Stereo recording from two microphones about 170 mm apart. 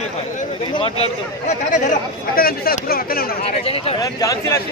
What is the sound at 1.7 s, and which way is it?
Speech, 50° left (ahead or behind).